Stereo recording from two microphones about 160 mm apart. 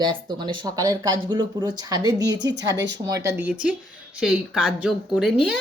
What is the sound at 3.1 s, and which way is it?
Speech, 20° right (ahead or behind).